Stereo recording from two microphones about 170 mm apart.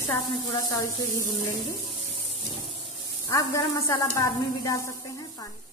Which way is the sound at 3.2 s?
20° left (ahead or behind).